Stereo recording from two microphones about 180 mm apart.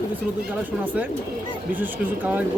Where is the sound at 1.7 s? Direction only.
10° right (ahead or behind).